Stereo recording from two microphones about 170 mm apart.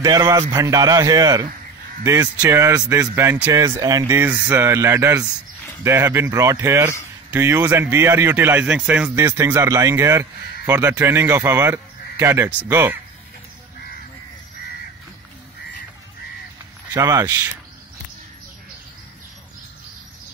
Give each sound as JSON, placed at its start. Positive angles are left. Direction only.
{"t": 0.0, "sound": "a man's voice", "side_deg": -20}
{"t": 16.9, "sound": "a man's voice", "side_deg": -20}